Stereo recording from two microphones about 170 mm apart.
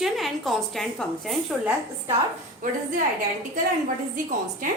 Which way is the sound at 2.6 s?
50° right (ahead or behind).